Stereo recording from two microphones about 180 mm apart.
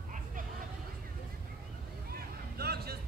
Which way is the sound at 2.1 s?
60° right (ahead or behind).